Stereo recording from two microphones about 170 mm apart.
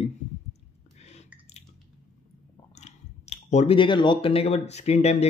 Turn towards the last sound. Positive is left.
turn(degrees=40)  # may be behind; listen again after turning